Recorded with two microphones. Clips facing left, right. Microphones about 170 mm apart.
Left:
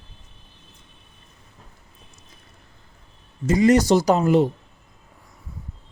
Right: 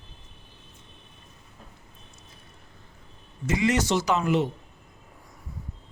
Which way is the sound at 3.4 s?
40° left (ahead or behind).